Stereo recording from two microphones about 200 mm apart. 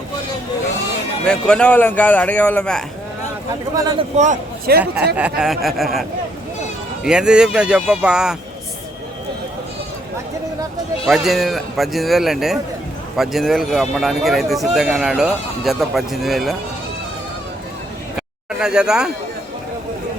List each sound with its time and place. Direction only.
1.3 s speech: 5° left (ahead or behind)
3.8 s a man's voice: 20° right (ahead or behind)
4.1 s a man's voice: 35° right (ahead or behind)
5.1 s speech: 5° right (ahead or behind)
11.0 s speech: centre (ahead or behind)
18.6 s speech: 5° right (ahead or behind)